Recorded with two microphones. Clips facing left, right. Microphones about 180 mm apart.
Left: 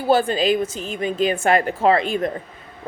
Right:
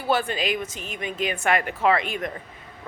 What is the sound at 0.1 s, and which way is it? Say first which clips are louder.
Speech: left 7 dB; 30° left (ahead or behind).